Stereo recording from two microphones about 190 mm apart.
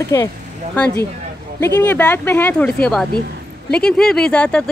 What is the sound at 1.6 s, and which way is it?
Speech, 15° left (ahead or behind).